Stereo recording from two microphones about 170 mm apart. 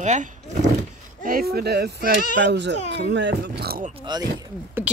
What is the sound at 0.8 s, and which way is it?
Speech, 65° right (ahead or behind).